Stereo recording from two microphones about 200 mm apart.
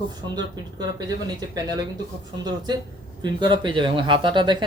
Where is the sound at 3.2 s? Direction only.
20° right (ahead or behind).